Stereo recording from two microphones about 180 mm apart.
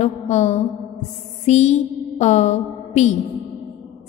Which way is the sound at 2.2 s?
40° left (ahead or behind).